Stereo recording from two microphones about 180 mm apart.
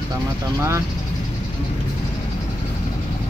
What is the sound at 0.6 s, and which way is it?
Speech, 15° right (ahead or behind).